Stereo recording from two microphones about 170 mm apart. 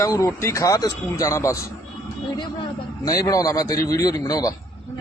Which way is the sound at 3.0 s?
20° left (ahead or behind).